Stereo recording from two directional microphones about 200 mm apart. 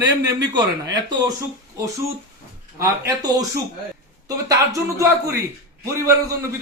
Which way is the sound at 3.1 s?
20° right (ahead or behind).